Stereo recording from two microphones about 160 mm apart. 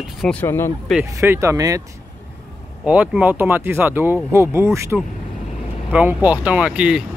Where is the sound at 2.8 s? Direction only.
10° right (ahead or behind).